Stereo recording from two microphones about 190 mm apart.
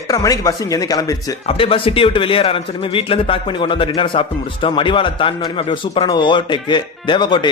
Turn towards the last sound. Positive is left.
turn(degrees=25)  # may be behind; listen again after turning